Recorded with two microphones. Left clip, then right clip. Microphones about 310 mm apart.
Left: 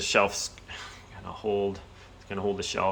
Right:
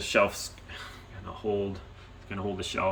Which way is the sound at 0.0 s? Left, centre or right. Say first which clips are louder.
Left 1 dB; centre.